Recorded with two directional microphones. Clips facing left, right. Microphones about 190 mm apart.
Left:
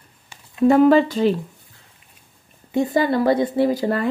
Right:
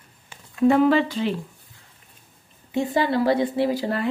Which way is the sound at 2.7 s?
45° left (ahead or behind).